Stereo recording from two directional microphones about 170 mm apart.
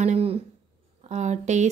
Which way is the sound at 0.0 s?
40° right (ahead or behind).